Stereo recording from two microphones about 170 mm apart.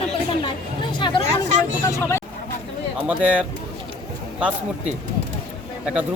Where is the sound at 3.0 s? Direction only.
5° right (ahead or behind).